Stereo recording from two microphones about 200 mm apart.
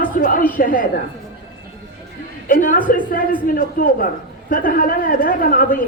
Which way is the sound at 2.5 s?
40° left (ahead or behind).